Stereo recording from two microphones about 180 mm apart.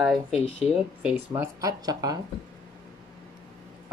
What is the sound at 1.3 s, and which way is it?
Speech, 20° right (ahead or behind).